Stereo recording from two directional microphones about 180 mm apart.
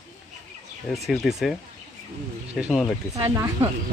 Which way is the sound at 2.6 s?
Centre (ahead or behind).